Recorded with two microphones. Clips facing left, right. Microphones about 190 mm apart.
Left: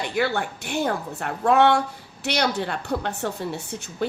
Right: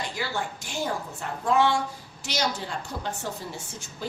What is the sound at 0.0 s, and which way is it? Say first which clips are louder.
A woman's voice: left 7 dB; 60° left (ahead or behind).